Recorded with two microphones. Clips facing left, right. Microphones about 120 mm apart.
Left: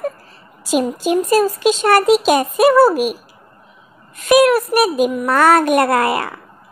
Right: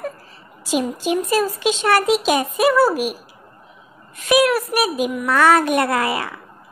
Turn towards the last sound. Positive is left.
turn(degrees=55)  # may be behind; listen again after turning